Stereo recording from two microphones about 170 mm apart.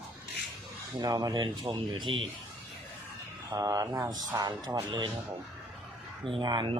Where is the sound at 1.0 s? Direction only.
20° right (ahead or behind).